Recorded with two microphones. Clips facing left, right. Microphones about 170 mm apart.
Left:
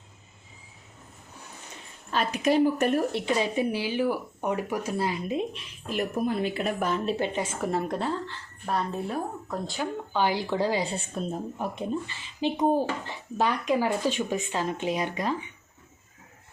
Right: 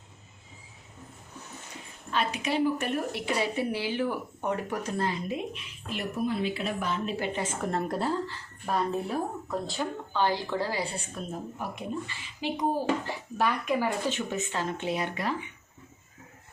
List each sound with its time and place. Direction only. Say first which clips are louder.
2.1 s speech: left 5 dB; 45° left (ahead or behind)
3.1 s speech: left 3 dB; 20° left (ahead or behind)
5.5 s speech: left 6 dB; 45° left (ahead or behind)
7.2 s a woman's voice: left 2 dB; 10° left (ahead or behind)
10.1 s a woman's voice: left 2 dB; 15° left (ahead or behind)